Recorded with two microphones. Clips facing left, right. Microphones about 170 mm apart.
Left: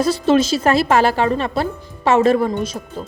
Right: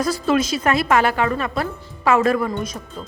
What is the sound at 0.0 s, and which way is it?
A woman's voice, 25° left (ahead or behind).